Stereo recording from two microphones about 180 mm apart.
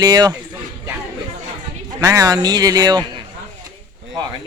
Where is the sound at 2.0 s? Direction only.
20° right (ahead or behind).